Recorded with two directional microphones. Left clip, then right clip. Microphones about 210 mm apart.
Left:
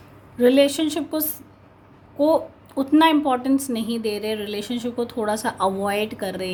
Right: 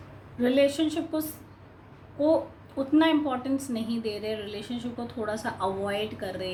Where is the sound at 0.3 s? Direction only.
45° left (ahead or behind).